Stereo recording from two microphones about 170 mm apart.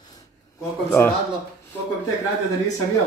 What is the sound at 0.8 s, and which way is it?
Speech, 15° left (ahead or behind).